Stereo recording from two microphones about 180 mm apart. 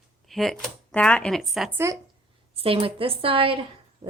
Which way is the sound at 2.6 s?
30° right (ahead or behind).